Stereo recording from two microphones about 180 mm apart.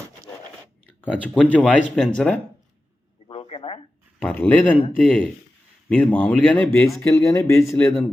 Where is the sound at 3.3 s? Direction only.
35° left (ahead or behind).